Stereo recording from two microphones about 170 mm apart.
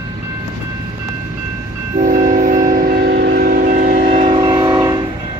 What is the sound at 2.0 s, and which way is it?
Train, 55° right (ahead or behind).